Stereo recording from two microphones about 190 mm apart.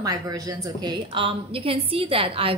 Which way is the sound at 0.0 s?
20° right (ahead or behind).